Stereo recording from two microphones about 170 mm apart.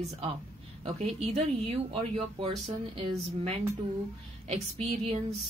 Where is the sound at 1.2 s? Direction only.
35° right (ahead or behind).